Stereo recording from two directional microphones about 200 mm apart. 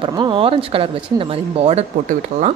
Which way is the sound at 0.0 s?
25° right (ahead or behind).